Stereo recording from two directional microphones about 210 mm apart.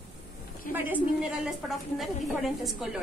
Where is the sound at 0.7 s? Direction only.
40° left (ahead or behind).